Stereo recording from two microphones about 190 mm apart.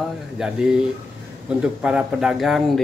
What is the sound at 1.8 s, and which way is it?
Speech, 5° right (ahead or behind).